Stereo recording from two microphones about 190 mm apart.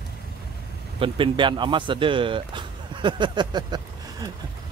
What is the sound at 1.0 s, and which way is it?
Speech, 25° right (ahead or behind).